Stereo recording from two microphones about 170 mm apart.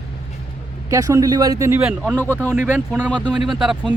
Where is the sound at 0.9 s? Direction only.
20° right (ahead or behind).